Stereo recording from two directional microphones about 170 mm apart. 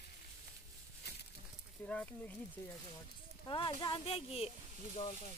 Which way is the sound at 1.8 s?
10° left (ahead or behind).